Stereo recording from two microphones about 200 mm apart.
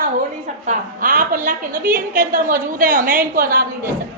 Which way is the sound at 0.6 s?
40° right (ahead or behind).